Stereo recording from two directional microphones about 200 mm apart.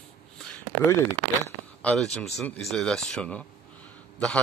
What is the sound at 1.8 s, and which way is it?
A man's voice, 5° left (ahead or behind).